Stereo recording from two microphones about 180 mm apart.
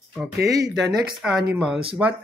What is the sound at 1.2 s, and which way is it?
Speech, centre (ahead or behind).